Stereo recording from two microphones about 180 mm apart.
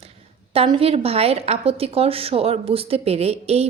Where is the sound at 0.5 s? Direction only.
30° right (ahead or behind).